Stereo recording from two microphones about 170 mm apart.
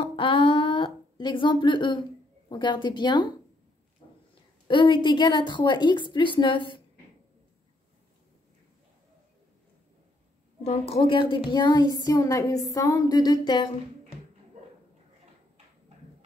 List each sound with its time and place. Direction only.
0.0 s a sound: 30° left (ahead or behind)
2.5 s a woman's voice: 25° left (ahead or behind)
4.6 s a woman's voice: 30° left (ahead or behind)
10.6 s a woman's voice: 40° left (ahead or behind)